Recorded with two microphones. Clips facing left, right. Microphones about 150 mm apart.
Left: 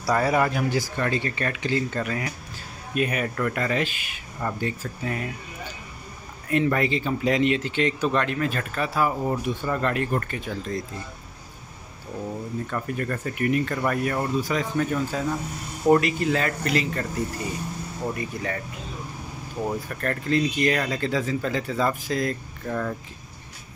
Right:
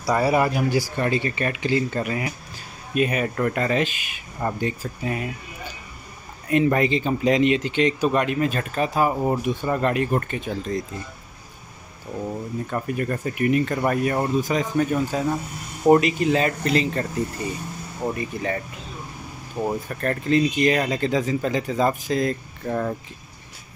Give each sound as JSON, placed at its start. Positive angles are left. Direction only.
{"t": 0.0, "sound": "speech", "side_deg": -10}
{"t": 2.9, "sound": "speech", "side_deg": -25}
{"t": 6.7, "sound": "speech", "side_deg": -20}
{"t": 12.6, "sound": "speech", "side_deg": -15}
{"t": 18.0, "sound": "speech", "side_deg": -25}
{"t": 20.0, "sound": "speech", "side_deg": -20}